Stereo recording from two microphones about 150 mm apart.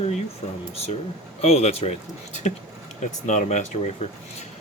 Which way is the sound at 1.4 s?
45° left (ahead or behind).